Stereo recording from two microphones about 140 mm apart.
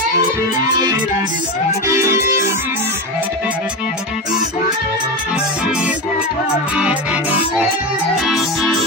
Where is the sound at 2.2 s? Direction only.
75° left (ahead or behind).